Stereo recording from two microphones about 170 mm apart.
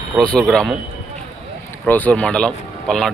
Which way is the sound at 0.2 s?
5° left (ahead or behind).